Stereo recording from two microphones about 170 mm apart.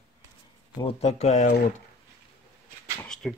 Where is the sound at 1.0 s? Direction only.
40° left (ahead or behind).